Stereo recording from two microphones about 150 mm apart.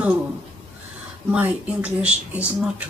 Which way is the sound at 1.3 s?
10° right (ahead or behind).